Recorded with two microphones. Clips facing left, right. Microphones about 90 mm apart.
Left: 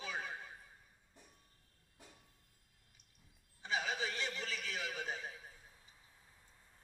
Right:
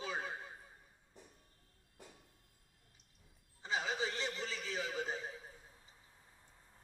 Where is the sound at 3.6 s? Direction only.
30° right (ahead or behind).